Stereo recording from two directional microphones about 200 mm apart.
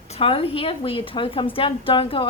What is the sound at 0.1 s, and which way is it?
A woman's voice, 30° left (ahead or behind).